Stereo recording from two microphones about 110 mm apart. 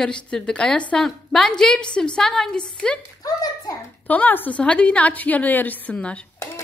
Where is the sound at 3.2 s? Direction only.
35° left (ahead or behind).